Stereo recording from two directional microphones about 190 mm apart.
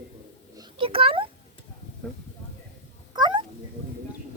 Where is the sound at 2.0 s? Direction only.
5° left (ahead or behind).